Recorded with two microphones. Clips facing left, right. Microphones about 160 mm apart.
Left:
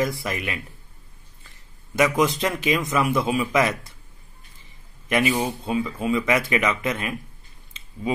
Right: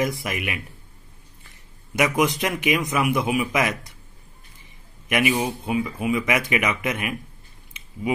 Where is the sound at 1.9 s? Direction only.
15° right (ahead or behind).